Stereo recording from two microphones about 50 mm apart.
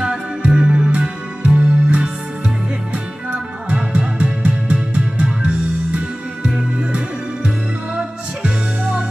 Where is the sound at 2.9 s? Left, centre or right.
Right.